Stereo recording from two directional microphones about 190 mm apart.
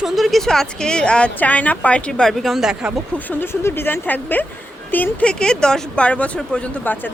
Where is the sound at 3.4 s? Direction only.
15° left (ahead or behind).